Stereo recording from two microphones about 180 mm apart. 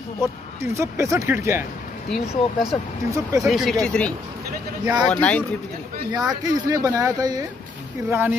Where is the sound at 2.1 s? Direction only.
5° left (ahead or behind).